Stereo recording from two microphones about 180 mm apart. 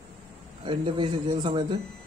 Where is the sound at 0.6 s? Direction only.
25° right (ahead or behind).